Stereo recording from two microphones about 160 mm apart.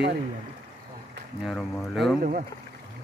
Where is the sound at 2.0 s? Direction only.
Centre (ahead or behind).